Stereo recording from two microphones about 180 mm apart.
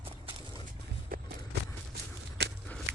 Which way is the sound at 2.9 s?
80° right.